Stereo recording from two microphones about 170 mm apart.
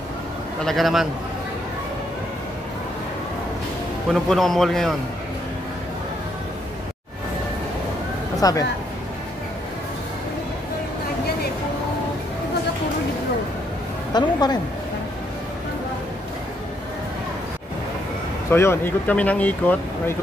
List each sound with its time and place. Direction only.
0.7 s a man's voice: centre (ahead or behind)
4.1 s a man's voice: centre (ahead or behind)
8.4 s speech: 20° left (ahead or behind)
14.1 s a woman's voice: 25° left (ahead or behind)
18.5 s speech: 15° left (ahead or behind)